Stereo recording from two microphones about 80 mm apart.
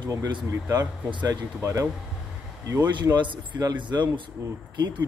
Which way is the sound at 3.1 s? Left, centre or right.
Right.